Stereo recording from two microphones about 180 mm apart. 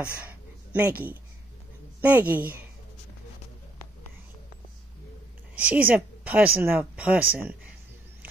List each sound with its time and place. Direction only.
0.3 s a sound: 10° right (ahead or behind)
2.0 s a woman's voice: 10° right (ahead or behind)
5.6 s a woman's voice: 10° right (ahead or behind)